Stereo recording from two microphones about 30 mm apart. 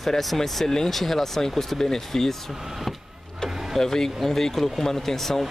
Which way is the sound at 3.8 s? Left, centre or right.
Centre.